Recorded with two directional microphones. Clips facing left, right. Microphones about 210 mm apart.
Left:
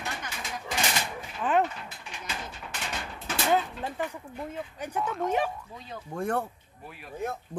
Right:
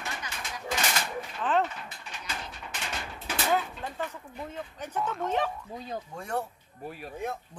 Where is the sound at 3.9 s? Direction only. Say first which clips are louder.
Left 2 dB; 10° left (ahead or behind).